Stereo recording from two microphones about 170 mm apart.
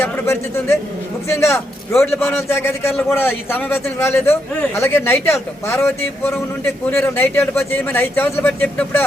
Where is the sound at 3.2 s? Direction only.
15° left (ahead or behind).